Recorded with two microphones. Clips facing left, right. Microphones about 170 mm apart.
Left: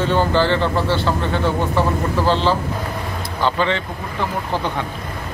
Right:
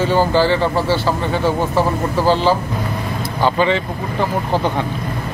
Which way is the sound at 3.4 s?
10° right (ahead or behind).